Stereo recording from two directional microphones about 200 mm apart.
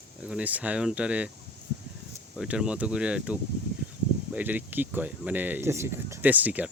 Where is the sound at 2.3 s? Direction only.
5° right (ahead or behind).